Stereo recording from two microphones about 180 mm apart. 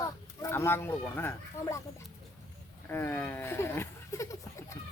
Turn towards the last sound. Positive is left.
turn(degrees=15)  # may be behind; listen again after turning